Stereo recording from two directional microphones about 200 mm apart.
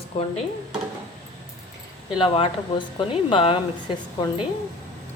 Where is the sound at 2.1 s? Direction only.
25° left (ahead or behind).